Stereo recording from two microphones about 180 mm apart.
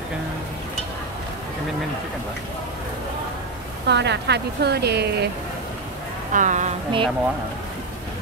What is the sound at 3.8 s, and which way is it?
A woman's voice, 70° right (ahead or behind).